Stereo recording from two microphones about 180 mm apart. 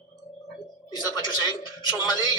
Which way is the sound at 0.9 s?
25° left (ahead or behind).